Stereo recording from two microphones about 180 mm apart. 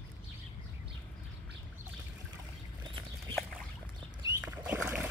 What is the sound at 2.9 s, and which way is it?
Chicken, 30° right (ahead or behind).